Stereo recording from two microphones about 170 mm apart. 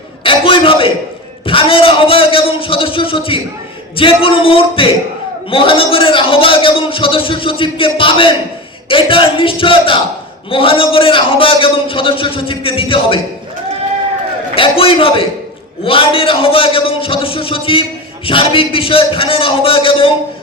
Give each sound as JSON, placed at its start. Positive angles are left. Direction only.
{"t": 0.2, "sound": "a sound", "side_deg": 30}
{"t": 1.5, "sound": "a man's voice", "side_deg": 30}
{"t": 14.5, "sound": "a man's voice", "side_deg": 30}